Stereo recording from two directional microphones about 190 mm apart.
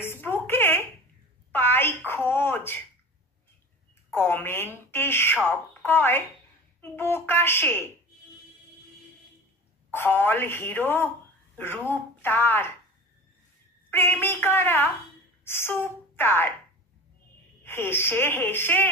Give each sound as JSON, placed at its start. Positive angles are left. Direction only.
{"t": 0.0, "sound": "a sound", "side_deg": 10}
{"t": 4.1, "sound": "a woman's voice", "side_deg": 10}
{"t": 9.8, "sound": "speech", "side_deg": 10}
{"t": 13.8, "sound": "a woman's voice", "side_deg": 10}
{"t": 17.6, "sound": "speech", "side_deg": 10}